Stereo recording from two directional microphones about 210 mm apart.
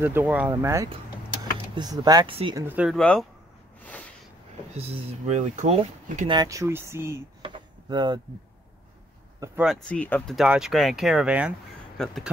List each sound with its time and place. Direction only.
0.0 s speech: 10° right (ahead or behind)
2.6 s speech: 5° right (ahead or behind)
3.0 s speech: 5° left (ahead or behind)
3.8 s a sound: 5° left (ahead or behind)
4.7 s speech: 30° right (ahead or behind); by 7.2 s 15° right (ahead or behind)
7.4 s a sound: 20° right (ahead or behind)
9.4 s speech: 5° right (ahead or behind)